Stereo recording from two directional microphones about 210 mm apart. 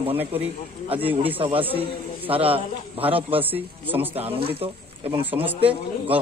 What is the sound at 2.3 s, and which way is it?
Speech, 25° right (ahead or behind).